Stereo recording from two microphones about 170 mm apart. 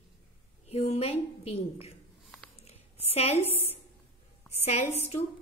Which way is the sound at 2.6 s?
35° left (ahead or behind).